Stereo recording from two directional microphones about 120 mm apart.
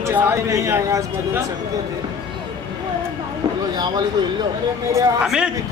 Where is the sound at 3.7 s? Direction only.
35° right (ahead or behind).